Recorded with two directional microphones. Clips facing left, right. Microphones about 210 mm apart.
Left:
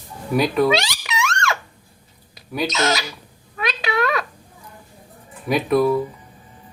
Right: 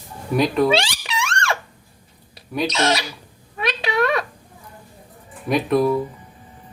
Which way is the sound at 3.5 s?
30° right (ahead or behind).